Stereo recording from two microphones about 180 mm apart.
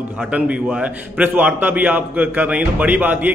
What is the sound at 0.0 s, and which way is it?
A man's voice, 5° right (ahead or behind).